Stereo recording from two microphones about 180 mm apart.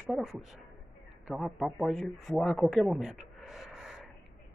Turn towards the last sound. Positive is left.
turn(degrees=0)  # may be behind; listen again after turning